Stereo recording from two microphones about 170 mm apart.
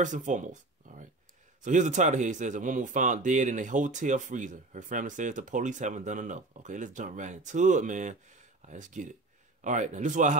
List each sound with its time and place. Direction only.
0.0 s speech: 50° right (ahead or behind)